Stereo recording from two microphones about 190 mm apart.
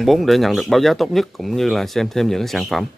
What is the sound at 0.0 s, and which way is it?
Speech, centre (ahead or behind).